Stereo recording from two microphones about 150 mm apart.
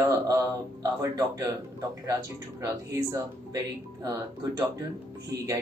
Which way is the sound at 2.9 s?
20° right (ahead or behind).